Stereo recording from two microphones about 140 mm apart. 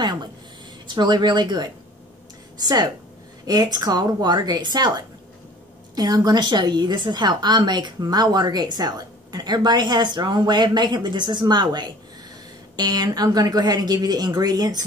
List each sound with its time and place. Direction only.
0.8 s a woman's voice: 30° right (ahead or behind)